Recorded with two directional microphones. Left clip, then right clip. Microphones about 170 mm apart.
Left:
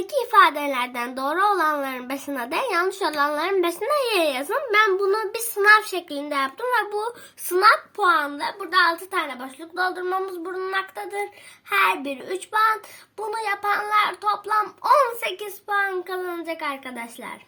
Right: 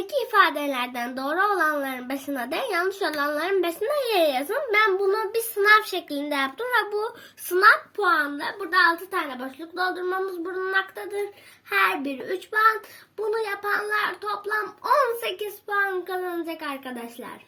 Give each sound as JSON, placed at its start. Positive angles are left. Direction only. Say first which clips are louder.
{"t": 0.0, "sound": "a child's voice", "louder": "left 3 dB", "side_deg": 25}
{"t": 7.5, "sound": "a child's voice", "louder": "even", "side_deg": 30}